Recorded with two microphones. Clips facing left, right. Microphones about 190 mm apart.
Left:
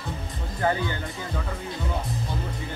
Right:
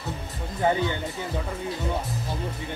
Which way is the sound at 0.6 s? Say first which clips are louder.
Right 2 dB; 20° right (ahead or behind).